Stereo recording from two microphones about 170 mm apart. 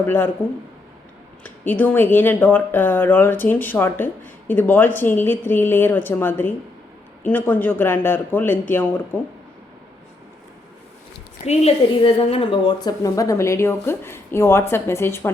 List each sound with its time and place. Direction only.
1.5 s speech: 10° left (ahead or behind)
11.4 s speech: 35° left (ahead or behind); by 15.3 s 15° left (ahead or behind)